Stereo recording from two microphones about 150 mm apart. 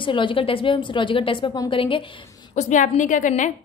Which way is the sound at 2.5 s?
55° left (ahead or behind).